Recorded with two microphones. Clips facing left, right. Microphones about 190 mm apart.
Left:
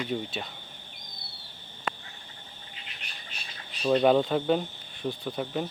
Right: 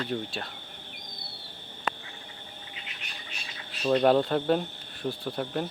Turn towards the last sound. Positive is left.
turn(degrees=0)  # may be behind; listen again after turning